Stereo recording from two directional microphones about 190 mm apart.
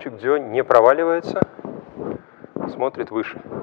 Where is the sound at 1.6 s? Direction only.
25° left (ahead or behind).